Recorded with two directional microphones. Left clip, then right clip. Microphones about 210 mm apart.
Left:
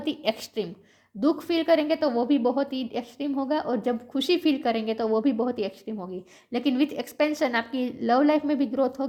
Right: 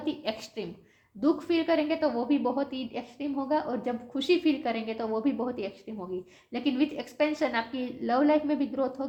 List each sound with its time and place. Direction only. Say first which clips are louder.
0.0 s a woman's voice: left 5 dB; 50° left (ahead or behind)